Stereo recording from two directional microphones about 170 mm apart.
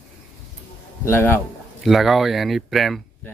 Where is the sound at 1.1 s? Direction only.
15° left (ahead or behind).